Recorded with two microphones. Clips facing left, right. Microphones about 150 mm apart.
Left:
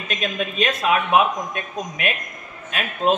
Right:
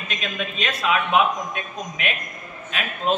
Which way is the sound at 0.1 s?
45° left (ahead or behind).